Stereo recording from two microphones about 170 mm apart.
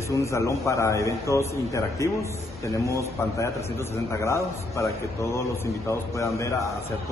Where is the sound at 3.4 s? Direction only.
15° left (ahead or behind).